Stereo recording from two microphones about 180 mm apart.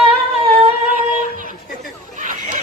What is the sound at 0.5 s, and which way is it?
Singing, 35° right (ahead or behind).